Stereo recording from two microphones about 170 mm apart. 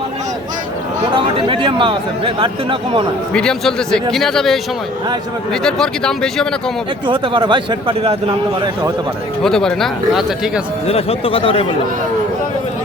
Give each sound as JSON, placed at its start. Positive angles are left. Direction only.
{"t": 1.1, "sound": "speech", "side_deg": -30}
{"t": 3.3, "sound": "speech", "side_deg": 5}
{"t": 5.6, "sound": "speech", "side_deg": 5}
{"t": 7.1, "sound": "speech", "side_deg": -30}
{"t": 9.4, "sound": "speech", "side_deg": 5}
{"t": 10.8, "sound": "speech", "side_deg": 35}